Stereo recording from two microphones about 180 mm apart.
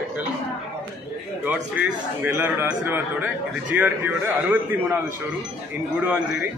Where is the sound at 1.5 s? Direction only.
10° right (ahead or behind).